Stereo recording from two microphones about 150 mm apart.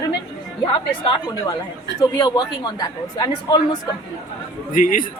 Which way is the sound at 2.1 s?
30° left (ahead or behind).